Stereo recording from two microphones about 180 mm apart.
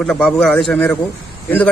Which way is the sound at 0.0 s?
5° left (ahead or behind).